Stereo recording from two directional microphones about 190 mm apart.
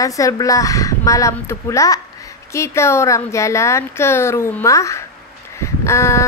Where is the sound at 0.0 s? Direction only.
15° left (ahead or behind).